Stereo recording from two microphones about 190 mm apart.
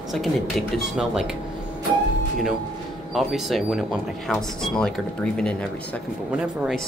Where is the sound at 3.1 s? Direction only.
Centre (ahead or behind).